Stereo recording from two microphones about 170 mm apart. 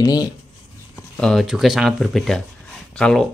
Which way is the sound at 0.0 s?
20° left (ahead or behind).